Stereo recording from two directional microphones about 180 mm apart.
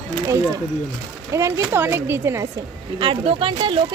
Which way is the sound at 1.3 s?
15° right (ahead or behind).